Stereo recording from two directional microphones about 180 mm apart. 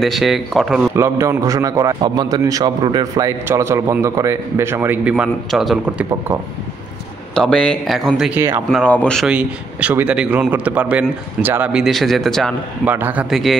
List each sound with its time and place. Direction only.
0.0 s speech: centre (ahead or behind)
0.9 s a man's voice: 15° right (ahead or behind)
7.3 s speech: 5° left (ahead or behind)
12.8 s a man's voice: 10° right (ahead or behind)